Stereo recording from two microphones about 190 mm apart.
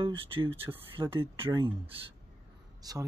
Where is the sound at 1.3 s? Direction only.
25° right (ahead or behind).